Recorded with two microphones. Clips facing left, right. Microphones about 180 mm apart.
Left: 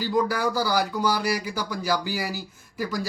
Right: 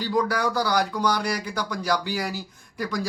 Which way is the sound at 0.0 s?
5° left (ahead or behind).